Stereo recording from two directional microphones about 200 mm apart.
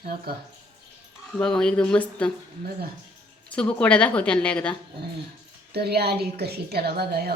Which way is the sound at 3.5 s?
5° left (ahead or behind).